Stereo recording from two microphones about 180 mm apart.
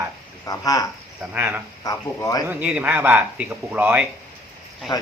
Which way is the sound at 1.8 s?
20° left (ahead or behind).